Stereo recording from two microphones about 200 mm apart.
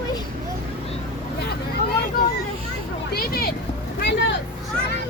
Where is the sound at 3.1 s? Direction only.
50° left (ahead or behind).